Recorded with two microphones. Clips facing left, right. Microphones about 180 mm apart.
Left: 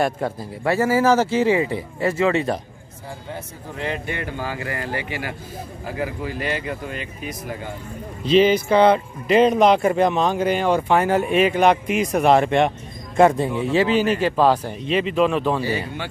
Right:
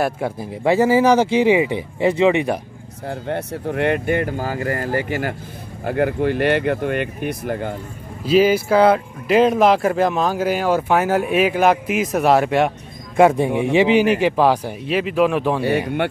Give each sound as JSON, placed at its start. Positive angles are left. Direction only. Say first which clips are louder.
{"t": 0.4, "sound": "speech", "louder": "right 6 dB", "side_deg": -20}
{"t": 3.1, "sound": "speech", "louder": "right 9 dB", "side_deg": -65}
{"t": 5.9, "sound": "speech", "louder": "right 9 dB", "side_deg": -65}
{"t": 8.2, "sound": "speech", "louder": "right 1 dB", "side_deg": -5}